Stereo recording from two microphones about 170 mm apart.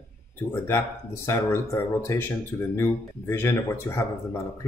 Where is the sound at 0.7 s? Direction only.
15° left (ahead or behind).